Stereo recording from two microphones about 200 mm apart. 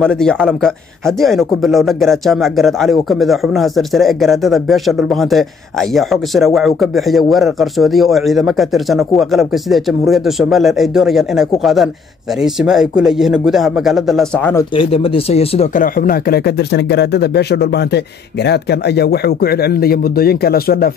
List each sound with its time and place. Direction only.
0.0 s speech: 5° left (ahead or behind)
14.8 s speech: 25° left (ahead or behind); by 20.9 s 50° left (ahead or behind)